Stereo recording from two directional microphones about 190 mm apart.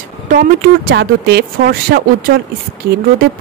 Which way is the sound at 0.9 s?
60° right (ahead or behind).